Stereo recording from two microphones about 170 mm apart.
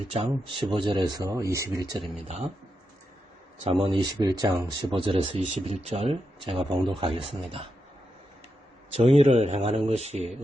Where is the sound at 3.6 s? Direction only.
35° right (ahead or behind).